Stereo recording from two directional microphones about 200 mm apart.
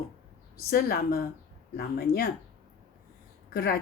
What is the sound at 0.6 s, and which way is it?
A woman's voice, 50° left (ahead or behind).